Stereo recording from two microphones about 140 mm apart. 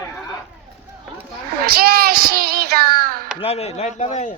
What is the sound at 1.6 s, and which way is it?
A child's voice, 90° right.